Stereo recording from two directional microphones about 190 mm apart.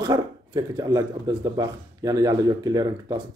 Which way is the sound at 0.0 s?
20° right (ahead or behind).